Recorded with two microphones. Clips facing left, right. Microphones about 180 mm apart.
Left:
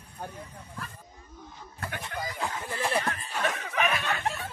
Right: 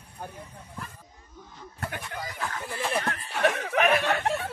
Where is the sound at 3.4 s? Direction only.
65° right (ahead or behind).